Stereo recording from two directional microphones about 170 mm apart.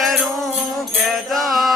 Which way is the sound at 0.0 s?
Centre (ahead or behind).